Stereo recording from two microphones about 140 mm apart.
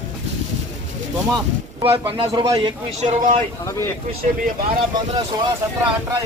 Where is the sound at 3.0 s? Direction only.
60° right (ahead or behind).